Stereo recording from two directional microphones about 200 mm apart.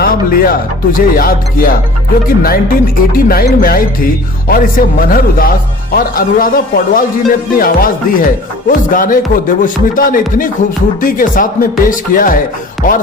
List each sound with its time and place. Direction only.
0.0 s speech: 45° left (ahead or behind)
12.8 s music: 40° left (ahead or behind)